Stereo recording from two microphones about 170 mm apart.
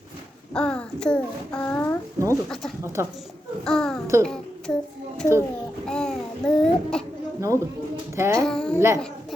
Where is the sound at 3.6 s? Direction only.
5° left (ahead or behind).